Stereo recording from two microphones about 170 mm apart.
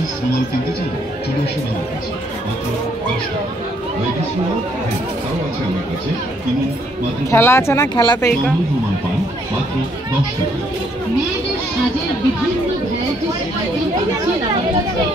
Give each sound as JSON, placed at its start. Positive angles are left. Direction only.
{"t": 7.2, "sound": "speech", "side_deg": 15}